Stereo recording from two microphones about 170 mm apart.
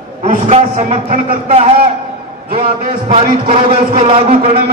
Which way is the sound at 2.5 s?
55° right (ahead or behind).